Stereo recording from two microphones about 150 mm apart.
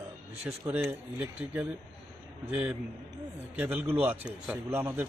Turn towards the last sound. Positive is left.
turn(degrees=-15)  # may be behind; listen again after turning